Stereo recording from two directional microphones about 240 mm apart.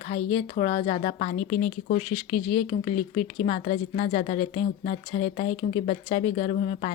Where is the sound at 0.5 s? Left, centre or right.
Left.